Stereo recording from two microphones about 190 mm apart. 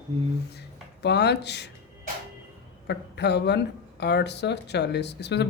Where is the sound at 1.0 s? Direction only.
60° left (ahead or behind).